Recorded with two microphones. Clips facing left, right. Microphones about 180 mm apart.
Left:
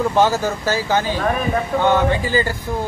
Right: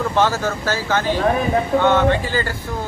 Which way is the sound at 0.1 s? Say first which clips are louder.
Left 2 dB; 15° left (ahead or behind).